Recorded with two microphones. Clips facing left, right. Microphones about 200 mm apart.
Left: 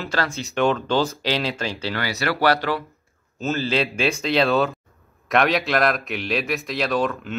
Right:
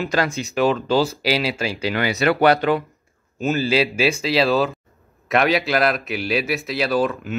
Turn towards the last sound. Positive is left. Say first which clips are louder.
# right 2 dB
turn(degrees=-5)  # may be behind; listen again after turning